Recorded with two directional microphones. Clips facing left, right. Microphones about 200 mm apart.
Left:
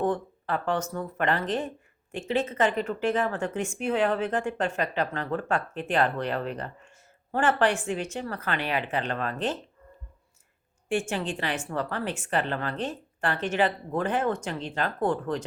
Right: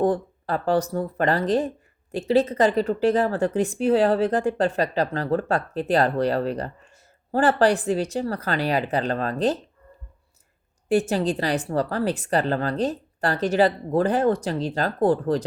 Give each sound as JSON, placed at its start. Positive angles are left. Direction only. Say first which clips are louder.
{"t": 0.0, "sound": "speech", "louder": "right 5 dB", "side_deg": -35}
{"t": 10.8, "sound": "speech", "louder": "right 7 dB", "side_deg": -40}